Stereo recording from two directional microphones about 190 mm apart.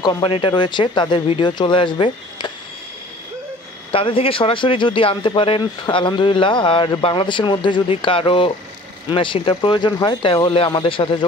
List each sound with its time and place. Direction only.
0.0 s speech: 25° left (ahead or behind)
3.9 s speech: 30° left (ahead or behind)